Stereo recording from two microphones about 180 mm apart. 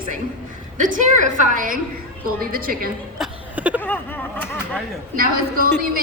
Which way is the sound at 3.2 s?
10° right (ahead or behind).